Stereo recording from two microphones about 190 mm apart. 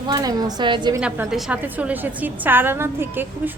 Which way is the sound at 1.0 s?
5° right (ahead or behind).